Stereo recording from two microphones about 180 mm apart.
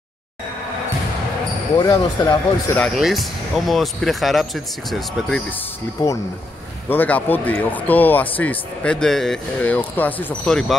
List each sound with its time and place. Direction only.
1.8 s speech: 20° left (ahead or behind)
2.8 s speech: centre (ahead or behind)
6.9 s speech: 10° left (ahead or behind)